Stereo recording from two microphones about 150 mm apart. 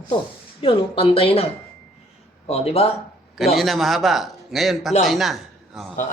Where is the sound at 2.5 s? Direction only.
40° left (ahead or behind).